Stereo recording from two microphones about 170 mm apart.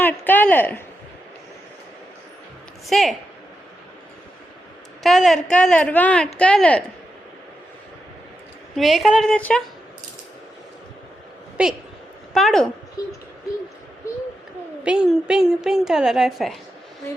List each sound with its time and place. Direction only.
0.0 s speech: 10° left (ahead or behind)
2.8 s a woman's voice: centre (ahead or behind)
5.0 s a woman's voice: centre (ahead or behind)
8.7 s a woman's voice: centre (ahead or behind)
11.6 s a woman's voice: 5° right (ahead or behind)
14.8 s a woman's voice: 5° right (ahead or behind)